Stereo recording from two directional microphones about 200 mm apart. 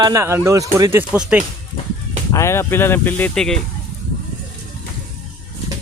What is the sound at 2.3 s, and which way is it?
Speech, 15° left (ahead or behind).